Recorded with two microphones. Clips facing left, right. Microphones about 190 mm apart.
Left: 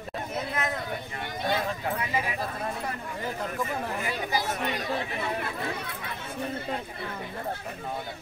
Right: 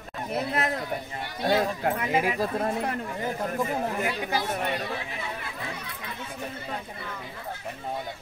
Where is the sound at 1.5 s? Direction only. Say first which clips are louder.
Right 6 dB; 60° right (ahead or behind).